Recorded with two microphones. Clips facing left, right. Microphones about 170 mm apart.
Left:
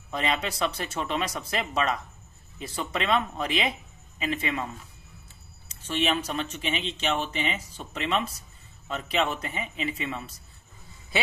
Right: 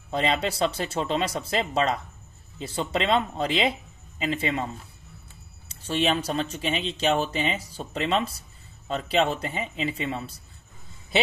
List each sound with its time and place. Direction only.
0.1 s speech: 30° right (ahead or behind)
5.7 s speech: 35° right (ahead or behind)